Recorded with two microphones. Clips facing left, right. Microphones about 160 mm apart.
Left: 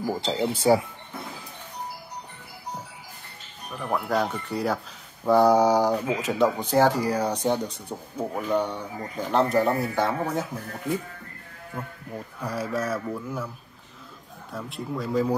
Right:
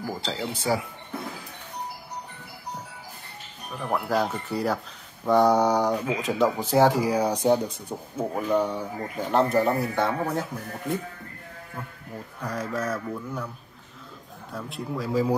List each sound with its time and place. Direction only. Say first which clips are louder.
0.0 s speech: left 5 dB; 20° left (ahead or behind)
3.7 s speech: even; centre (ahead or behind)
8.5 s speech: right 1 dB; 35° right (ahead or behind)
9.0 s speech: even; centre (ahead or behind)
12.4 s speech: left 1 dB; 10° left (ahead or behind)
14.5 s speech: even; centre (ahead or behind)